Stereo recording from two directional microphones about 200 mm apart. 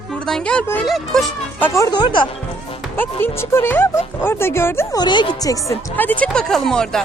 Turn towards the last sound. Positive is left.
turn(degrees=5)  # may be behind; listen again after turning